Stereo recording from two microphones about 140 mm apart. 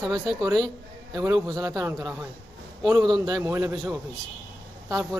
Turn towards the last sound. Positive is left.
turn(degrees=-25)  # may be behind; listen again after turning